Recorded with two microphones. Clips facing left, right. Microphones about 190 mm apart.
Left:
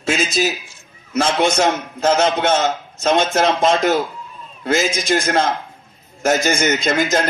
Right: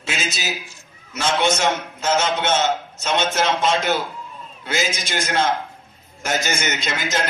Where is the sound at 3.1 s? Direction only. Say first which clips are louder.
Left 3 dB; 45° left (ahead or behind).